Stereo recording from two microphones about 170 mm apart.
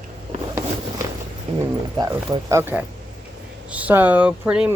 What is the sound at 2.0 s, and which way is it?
Speech, 20° right (ahead or behind).